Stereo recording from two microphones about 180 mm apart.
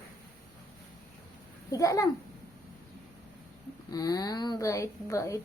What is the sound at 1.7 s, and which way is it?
Speech, 20° left (ahead or behind).